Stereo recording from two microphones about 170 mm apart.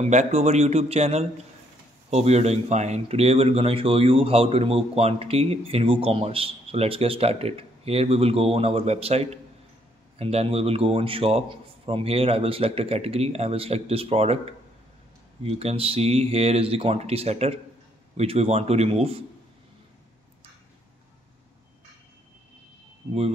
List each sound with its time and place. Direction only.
0.0 s speech: 40° right (ahead or behind)